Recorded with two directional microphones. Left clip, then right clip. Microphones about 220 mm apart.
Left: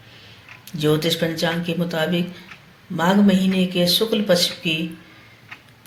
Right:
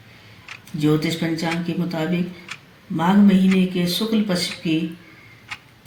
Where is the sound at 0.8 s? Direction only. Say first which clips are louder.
Left 2 dB; 45° left (ahead or behind).